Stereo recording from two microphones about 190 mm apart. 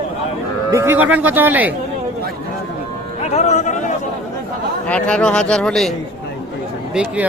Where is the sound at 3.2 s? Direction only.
35° left (ahead or behind).